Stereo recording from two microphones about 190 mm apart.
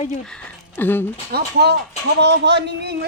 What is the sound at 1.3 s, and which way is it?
Speech, 60° right (ahead or behind).